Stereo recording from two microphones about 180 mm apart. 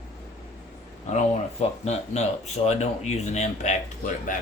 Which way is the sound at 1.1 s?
40° left (ahead or behind).